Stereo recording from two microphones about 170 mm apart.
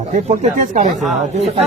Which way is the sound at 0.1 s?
50° right (ahead or behind).